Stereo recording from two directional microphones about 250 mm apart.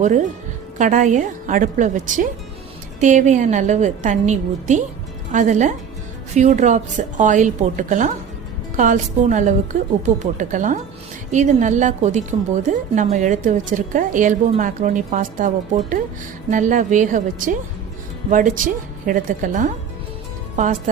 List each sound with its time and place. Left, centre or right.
0.8 s a woman's voice: right